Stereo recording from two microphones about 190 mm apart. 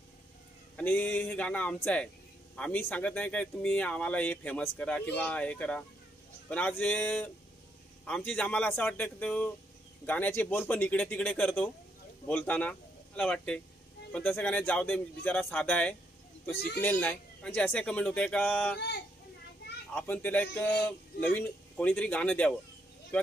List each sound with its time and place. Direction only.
0.7 s speech: 5° left (ahead or behind)
16.5 s speech: 55° left (ahead or behind)
16.8 s speech: 10° left (ahead or behind)
19.9 s speech: 10° left (ahead or behind)